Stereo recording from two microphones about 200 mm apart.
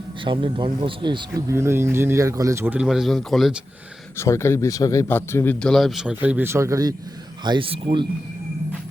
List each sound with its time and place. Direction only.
0.3 s speech: 25° right (ahead or behind); by 3.6 s centre (ahead or behind)
4.2 s speech: 15° left (ahead or behind); by 8.0 s 25° right (ahead or behind)